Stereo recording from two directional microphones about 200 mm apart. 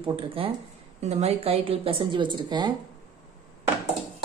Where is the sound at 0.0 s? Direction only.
25° right (ahead or behind).